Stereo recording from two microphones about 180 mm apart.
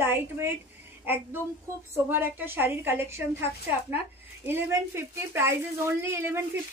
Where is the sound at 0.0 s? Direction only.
10° right (ahead or behind).